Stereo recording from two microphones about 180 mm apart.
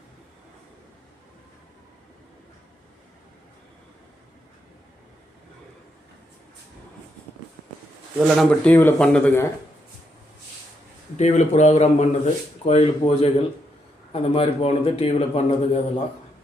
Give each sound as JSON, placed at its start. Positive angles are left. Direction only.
{"t": 8.4, "sound": "speech", "side_deg": 10}
{"t": 11.2, "sound": "speech", "side_deg": 40}